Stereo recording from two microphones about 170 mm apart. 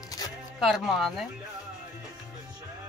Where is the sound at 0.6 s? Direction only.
Centre (ahead or behind).